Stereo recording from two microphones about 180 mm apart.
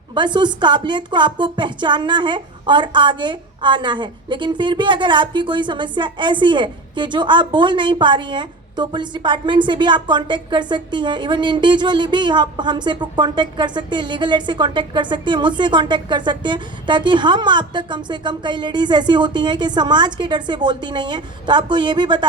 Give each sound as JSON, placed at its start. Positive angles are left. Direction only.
{"t": 0.1, "sound": "a woman's voice", "side_deg": -25}